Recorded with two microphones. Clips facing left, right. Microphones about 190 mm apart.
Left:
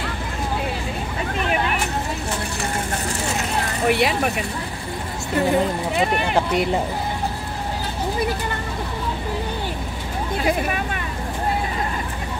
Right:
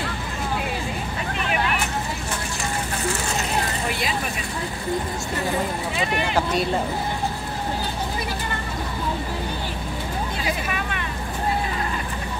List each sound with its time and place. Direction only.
3.9 s speech: 65° left (ahead or behind)
6.3 s speech: 20° left (ahead or behind)